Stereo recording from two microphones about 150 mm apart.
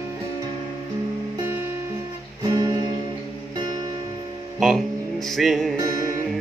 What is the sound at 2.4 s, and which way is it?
Music, 30° right (ahead or behind).